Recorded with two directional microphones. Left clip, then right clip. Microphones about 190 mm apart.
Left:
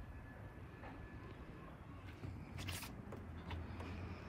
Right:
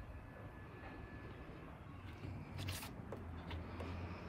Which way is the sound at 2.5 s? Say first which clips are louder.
Even; 15° right (ahead or behind).